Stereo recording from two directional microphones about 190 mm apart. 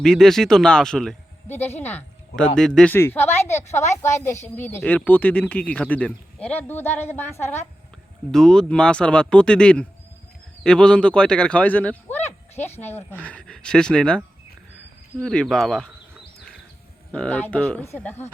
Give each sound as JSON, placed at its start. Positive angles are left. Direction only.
{"t": 0.0, "sound": "speech", "side_deg": 0}
{"t": 3.6, "sound": "a woman's voice", "side_deg": 35}
{"t": 4.2, "sound": "speech", "side_deg": 15}
{"t": 15.2, "sound": "speech", "side_deg": 5}
{"t": 17.1, "sound": "speech", "side_deg": 5}